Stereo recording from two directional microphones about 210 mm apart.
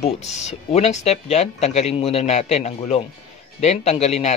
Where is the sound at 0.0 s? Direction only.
30° left (ahead or behind).